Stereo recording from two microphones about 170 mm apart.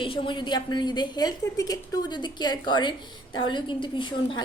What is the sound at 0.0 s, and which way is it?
A woman's voice, 30° left (ahead or behind).